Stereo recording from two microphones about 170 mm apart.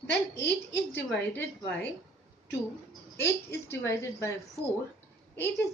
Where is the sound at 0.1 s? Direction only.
85° left.